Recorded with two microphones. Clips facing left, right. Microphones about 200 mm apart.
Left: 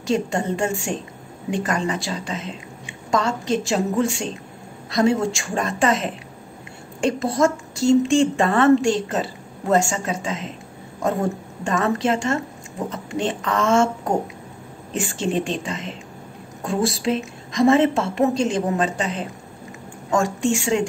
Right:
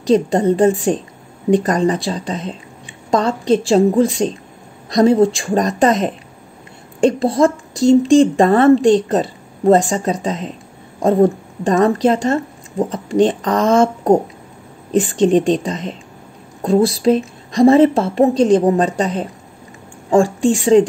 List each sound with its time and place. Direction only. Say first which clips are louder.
0.0 s a woman's voice: right 8 dB; 35° right (ahead or behind)